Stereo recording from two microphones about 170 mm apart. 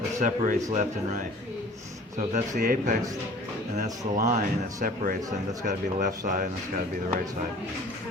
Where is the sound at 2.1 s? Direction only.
45° right (ahead or behind).